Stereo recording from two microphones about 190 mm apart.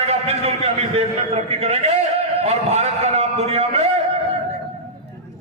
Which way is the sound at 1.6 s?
35° right (ahead or behind).